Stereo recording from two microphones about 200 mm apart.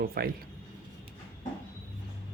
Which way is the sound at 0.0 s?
50° right (ahead or behind).